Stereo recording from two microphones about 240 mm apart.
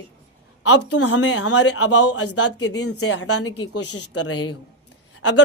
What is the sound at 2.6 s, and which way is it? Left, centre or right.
Speech, left.